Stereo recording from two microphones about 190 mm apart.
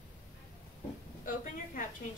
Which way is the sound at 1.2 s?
45° left (ahead or behind).